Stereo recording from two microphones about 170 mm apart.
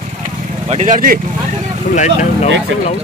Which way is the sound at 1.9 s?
45° left (ahead or behind).